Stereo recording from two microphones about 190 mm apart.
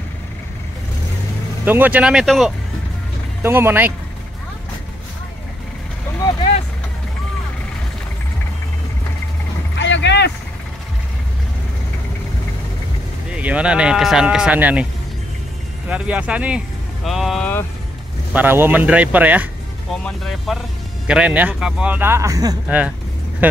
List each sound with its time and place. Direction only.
1.6 s speech: 10° right (ahead or behind)
3.4 s a man's voice: 10° right (ahead or behind)
6.2 s vehicle: 15° left (ahead or behind)
9.8 s vehicle: 70° left (ahead or behind)
13.3 s speech: 5° right (ahead or behind)
15.9 s speech: 5° right (ahead or behind)
18.3 s speech: 10° right (ahead or behind)
20.0 s a man's voice: centre (ahead or behind); by 22.6 s 20° right (ahead or behind)
22.7 s a man's voice: 5° right (ahead or behind)